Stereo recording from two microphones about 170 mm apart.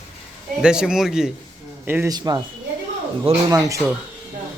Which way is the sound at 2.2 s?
25° right (ahead or behind).